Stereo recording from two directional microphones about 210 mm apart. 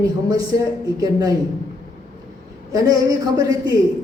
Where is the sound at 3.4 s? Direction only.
15° right (ahead or behind).